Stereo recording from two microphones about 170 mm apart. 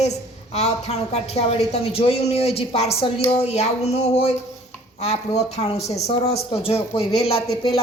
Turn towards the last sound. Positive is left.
turn(degrees=35)  # may be behind; listen again after turning